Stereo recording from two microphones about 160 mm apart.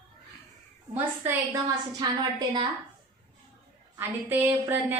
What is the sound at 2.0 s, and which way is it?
Speech, 25° right (ahead or behind).